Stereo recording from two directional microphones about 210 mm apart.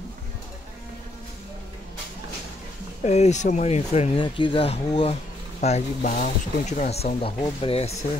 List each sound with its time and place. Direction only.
3.0 s speech: 30° left (ahead or behind)